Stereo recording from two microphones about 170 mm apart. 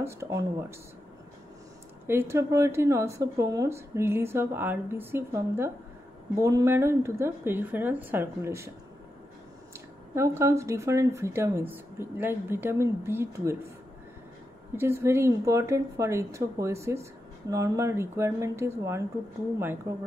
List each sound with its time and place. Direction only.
0.0 s speech: 15° right (ahead or behind)
2.0 s speech: 15° right (ahead or behind)
10.1 s speech: 15° right (ahead or behind)
14.8 s speech: 15° right (ahead or behind)